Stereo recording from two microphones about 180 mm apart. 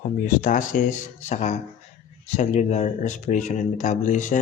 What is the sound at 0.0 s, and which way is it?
Speech, 45° left (ahead or behind).